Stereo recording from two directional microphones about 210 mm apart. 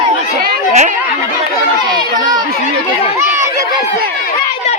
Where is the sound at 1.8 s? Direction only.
20° right (ahead or behind).